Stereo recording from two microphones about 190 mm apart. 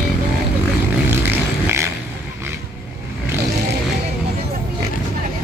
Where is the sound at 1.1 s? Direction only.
15° right (ahead or behind).